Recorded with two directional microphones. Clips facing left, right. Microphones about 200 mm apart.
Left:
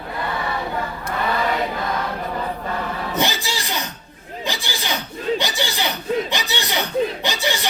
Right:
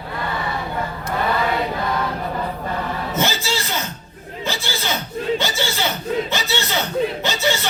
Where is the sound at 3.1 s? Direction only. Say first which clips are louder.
Right 1 dB; 15° left (ahead or behind).